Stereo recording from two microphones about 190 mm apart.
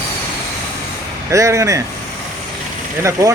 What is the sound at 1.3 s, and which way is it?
Speech, 15° right (ahead or behind).